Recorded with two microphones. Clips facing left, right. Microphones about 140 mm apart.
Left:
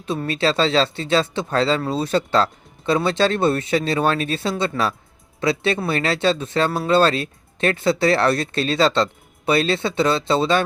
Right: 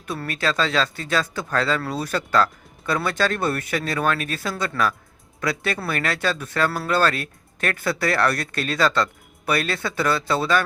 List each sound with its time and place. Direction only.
0.0 s speech: 25° left (ahead or behind)